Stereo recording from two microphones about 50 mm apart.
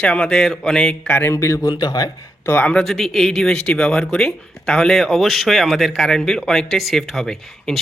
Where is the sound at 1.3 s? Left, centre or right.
Left.